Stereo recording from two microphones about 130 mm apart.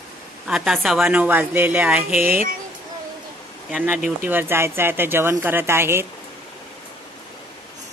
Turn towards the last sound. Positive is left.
turn(degrees=-20)  # may be behind; listen again after turning